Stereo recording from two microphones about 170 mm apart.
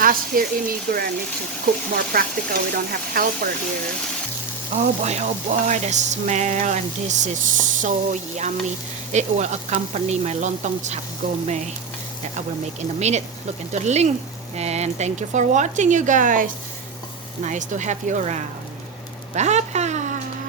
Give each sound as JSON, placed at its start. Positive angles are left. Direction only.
{"t": 0.0, "sound": "speech", "side_deg": -55}
{"t": 4.8, "sound": "frying", "side_deg": -40}
{"t": 11.4, "sound": "speech", "side_deg": -40}
{"t": 13.0, "sound": "speech", "side_deg": -40}
{"t": 14.5, "sound": "frying", "side_deg": -40}
{"t": 19.3, "sound": "a sound", "side_deg": -40}